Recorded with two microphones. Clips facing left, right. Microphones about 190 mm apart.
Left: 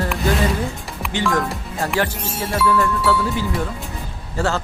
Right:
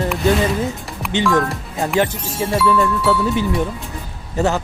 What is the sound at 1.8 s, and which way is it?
Speech, 20° right (ahead or behind).